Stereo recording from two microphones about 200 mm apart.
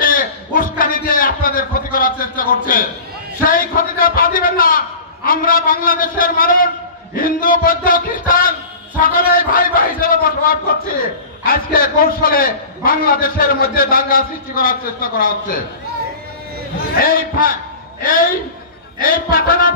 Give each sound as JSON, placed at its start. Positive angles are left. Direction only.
{"t": 0.0, "sound": "a sound", "side_deg": 45}
{"t": 0.6, "sound": "a man's voice", "side_deg": 45}
{"t": 17.0, "sound": "a man's voice", "side_deg": 45}
{"t": 18.9, "sound": "a man's voice", "side_deg": 45}